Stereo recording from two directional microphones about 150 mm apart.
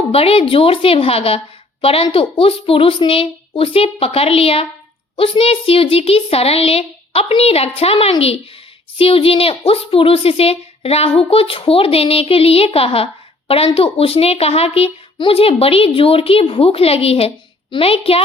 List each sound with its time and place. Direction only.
0.1 s a woman's voice: 40° left (ahead or behind)